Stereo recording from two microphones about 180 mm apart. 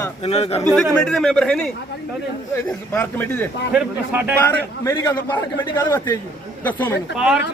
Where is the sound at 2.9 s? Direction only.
10° left (ahead or behind).